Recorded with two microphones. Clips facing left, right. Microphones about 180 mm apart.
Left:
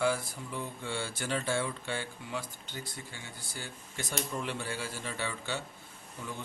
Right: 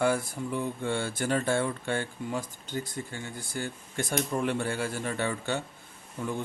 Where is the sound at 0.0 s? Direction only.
55° right (ahead or behind).